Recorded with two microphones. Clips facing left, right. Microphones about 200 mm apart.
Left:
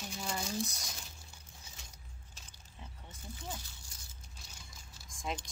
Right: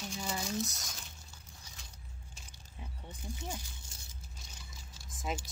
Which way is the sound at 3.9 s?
25° right (ahead or behind).